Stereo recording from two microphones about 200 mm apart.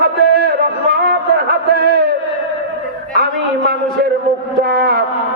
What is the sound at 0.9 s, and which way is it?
Music, 50° right (ahead or behind).